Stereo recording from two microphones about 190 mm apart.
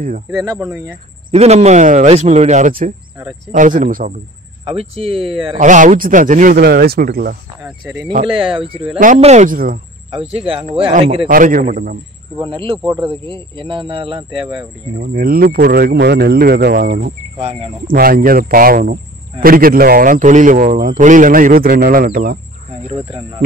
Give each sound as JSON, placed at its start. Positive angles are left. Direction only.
{"t": 1.3, "sound": "a man's voice", "side_deg": -35}
{"t": 4.6, "sound": "speech", "side_deg": -30}
{"t": 5.6, "sound": "a man's voice", "side_deg": -40}
{"t": 7.6, "sound": "speech", "side_deg": -5}
{"t": 8.5, "sound": "speech", "side_deg": -25}
{"t": 9.0, "sound": "speech", "side_deg": -40}
{"t": 10.3, "sound": "speech", "side_deg": -30}
{"t": 10.9, "sound": "a man's voice", "side_deg": -40}
{"t": 12.4, "sound": "speech", "side_deg": -25}
{"t": 15.1, "sound": "speech", "side_deg": -50}
{"t": 17.4, "sound": "speech", "side_deg": -35}
{"t": 17.8, "sound": "a man's voice", "side_deg": -50}
{"t": 22.8, "sound": "speech", "side_deg": -25}